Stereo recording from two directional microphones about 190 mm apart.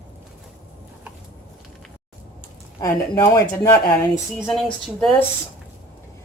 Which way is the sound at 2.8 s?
15° left (ahead or behind).